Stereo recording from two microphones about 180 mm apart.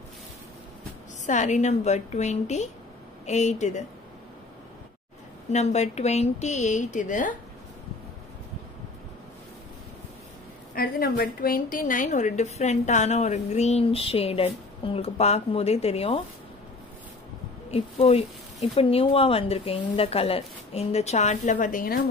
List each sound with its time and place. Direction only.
1.2 s speech: 40° left (ahead or behind)
5.5 s speech: 40° left (ahead or behind)
10.7 s speech: 60° left (ahead or behind); by 16.2 s 35° left (ahead or behind)
17.6 s speech: 35° left (ahead or behind)